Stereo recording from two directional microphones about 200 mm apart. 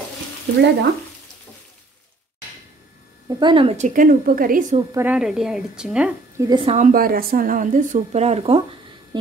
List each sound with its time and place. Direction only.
3.3 s a woman's voice: 20° right (ahead or behind); by 4.7 s 40° right (ahead or behind)
4.9 s a woman's voice: 5° right (ahead or behind)
6.4 s a woman's voice: 25° right (ahead or behind)
9.1 s humming: 20° right (ahead or behind)